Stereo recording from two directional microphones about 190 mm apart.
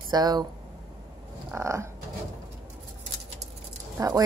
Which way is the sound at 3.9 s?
15° right (ahead or behind).